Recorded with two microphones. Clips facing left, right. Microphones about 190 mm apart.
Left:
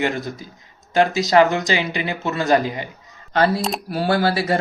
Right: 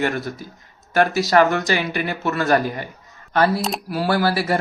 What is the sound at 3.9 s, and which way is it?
Speech, 25° left (ahead or behind).